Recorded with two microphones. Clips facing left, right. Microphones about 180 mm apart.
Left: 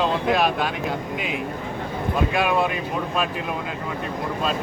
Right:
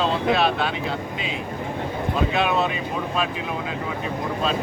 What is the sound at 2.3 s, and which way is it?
Speech, 10° left (ahead or behind).